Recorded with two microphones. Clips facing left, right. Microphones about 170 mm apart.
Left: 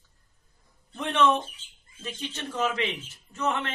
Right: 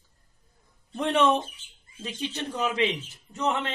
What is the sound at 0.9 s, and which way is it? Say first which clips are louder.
Speech: right 1 dB; 35° right (ahead or behind).